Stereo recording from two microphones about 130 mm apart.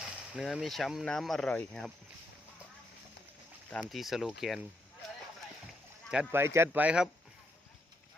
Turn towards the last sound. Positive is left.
turn(degrees=-5)  # may be behind; listen again after turning